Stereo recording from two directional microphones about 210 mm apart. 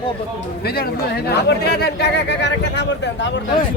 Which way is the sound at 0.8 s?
50° left (ahead or behind).